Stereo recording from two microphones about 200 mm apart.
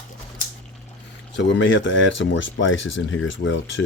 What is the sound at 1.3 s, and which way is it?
Speech, 65° left (ahead or behind).